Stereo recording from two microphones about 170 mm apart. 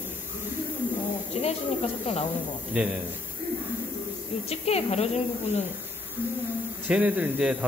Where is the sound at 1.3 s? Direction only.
40° left (ahead or behind).